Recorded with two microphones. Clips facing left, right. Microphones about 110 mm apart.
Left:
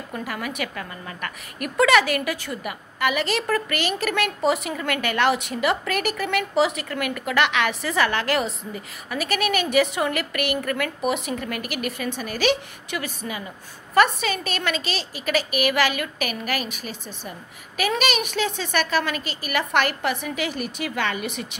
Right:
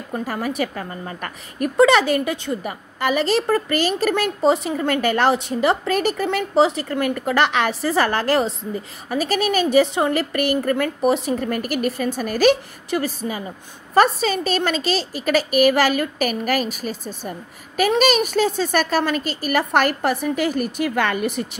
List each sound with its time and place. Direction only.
0.1 s a woman's voice: 35° right (ahead or behind)